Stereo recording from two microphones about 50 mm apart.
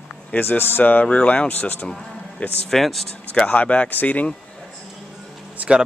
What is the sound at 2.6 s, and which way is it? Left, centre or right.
Speech, centre.